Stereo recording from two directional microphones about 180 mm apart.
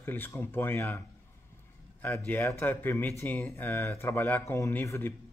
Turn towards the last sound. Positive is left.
turn(degrees=15)  # may be behind; listen again after turning